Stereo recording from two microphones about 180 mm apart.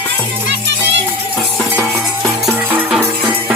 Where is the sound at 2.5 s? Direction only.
10° right (ahead or behind).